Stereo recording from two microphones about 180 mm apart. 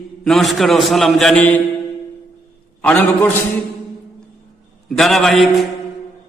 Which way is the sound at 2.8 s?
10° left (ahead or behind).